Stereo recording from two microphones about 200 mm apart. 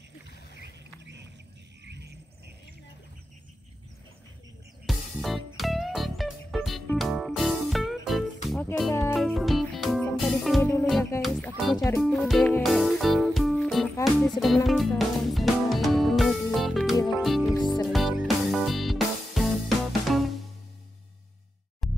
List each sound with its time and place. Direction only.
0.6 s a sound: 60° right (ahead or behind)
1.9 s vehicle: 55° right (ahead or behind)
4.8 s music: centre (ahead or behind)
10.6 s music: 15° left (ahead or behind)
11.1 s music: centre (ahead or behind)
21.8 s music: centre (ahead or behind)